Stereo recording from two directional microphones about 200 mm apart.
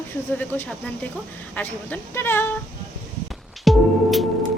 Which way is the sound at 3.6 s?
Centre (ahead or behind).